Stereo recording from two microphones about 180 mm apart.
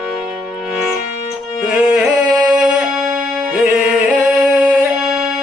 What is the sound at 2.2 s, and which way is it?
Singing, 20° right (ahead or behind).